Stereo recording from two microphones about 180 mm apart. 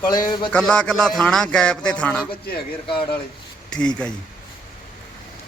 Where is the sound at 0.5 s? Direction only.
5° left (ahead or behind).